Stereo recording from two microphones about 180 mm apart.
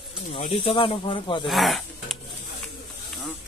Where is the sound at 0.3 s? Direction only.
35° left (ahead or behind).